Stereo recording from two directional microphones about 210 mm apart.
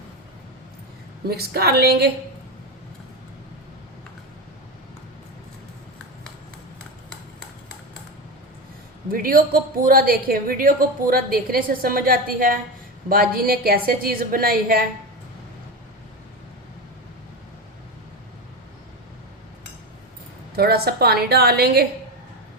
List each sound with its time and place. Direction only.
1.3 s a woman's voice: 50° right (ahead or behind)
9.1 s a woman's voice: 45° right (ahead or behind)
20.6 s a woman's voice: 50° right (ahead or behind)